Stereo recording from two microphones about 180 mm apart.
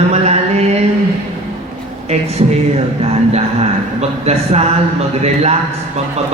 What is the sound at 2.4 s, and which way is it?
Speech, 40° right (ahead or behind).